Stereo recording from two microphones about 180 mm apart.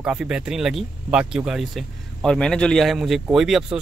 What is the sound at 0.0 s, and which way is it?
Speech, 5° right (ahead or behind).